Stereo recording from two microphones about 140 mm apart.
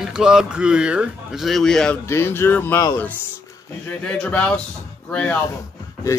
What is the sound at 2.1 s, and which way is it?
Speech, 15° left (ahead or behind).